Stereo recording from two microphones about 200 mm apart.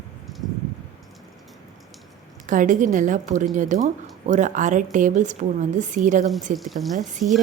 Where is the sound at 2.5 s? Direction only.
40° right (ahead or behind).